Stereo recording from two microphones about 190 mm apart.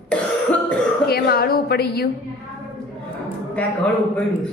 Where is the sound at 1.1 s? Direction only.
55° left (ahead or behind).